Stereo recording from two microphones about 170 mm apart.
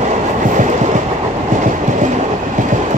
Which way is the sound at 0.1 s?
45° right (ahead or behind).